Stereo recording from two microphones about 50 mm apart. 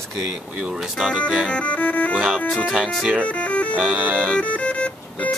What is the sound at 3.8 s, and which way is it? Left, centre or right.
Speech, right.